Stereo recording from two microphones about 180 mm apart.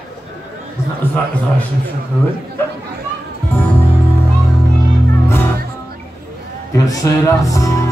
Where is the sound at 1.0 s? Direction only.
10° left (ahead or behind).